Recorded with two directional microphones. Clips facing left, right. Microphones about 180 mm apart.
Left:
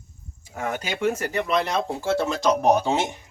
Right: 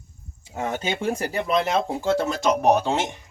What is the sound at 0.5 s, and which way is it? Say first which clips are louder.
Speech: right 2 dB; 25° right (ahead or behind).